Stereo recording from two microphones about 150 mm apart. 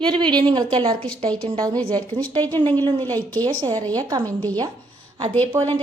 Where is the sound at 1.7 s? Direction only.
10° left (ahead or behind).